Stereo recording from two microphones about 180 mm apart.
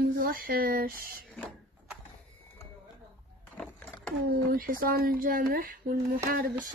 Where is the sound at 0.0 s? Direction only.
55° right (ahead or behind).